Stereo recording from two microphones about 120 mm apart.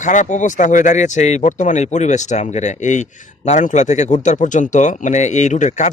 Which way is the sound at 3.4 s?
80° left.